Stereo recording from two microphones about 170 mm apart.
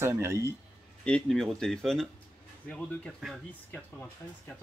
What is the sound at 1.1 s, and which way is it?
Speech, 5° left (ahead or behind).